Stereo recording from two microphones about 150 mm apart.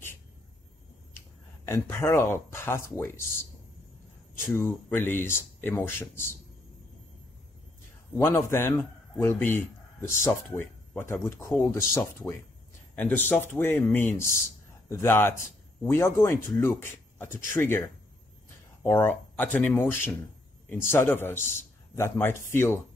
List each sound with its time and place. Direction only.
1.7 s speech: 20° left (ahead or behind)
8.2 s speech: 15° left (ahead or behind)